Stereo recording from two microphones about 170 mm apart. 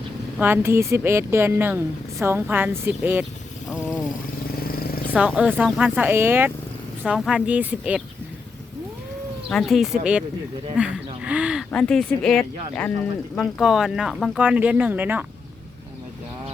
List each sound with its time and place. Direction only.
0.3 s a woman's voice: 10° right (ahead or behind)
4.6 s vehicle: 60° left (ahead or behind)
5.1 s a woman's voice: 5° right (ahead or behind)
9.5 s speech: centre (ahead or behind)
11.7 s speech: 5° left (ahead or behind); by 15.2 s 10° right (ahead or behind)